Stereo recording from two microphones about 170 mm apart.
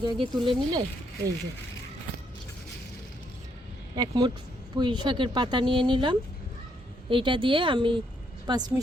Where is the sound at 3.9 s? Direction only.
25° right (ahead or behind).